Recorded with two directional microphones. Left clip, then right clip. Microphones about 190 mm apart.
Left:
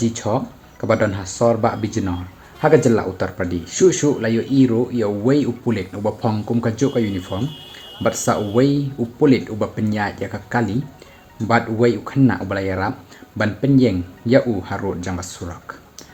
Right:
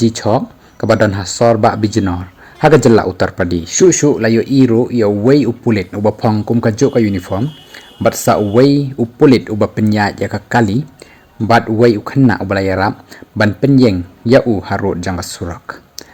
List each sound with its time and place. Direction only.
0.0 s speech: 45° right (ahead or behind)